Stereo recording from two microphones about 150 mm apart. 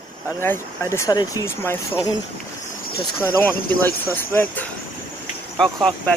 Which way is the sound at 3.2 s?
15° left (ahead or behind).